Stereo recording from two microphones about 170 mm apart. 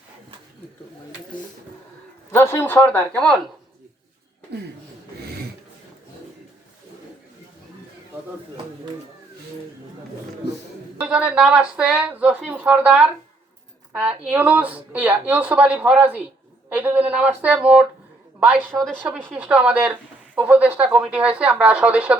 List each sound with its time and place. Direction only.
2.3 s speech: 15° left (ahead or behind)
4.5 s speech: 80° right
11.0 s a woman's voice: 5° right (ahead or behind)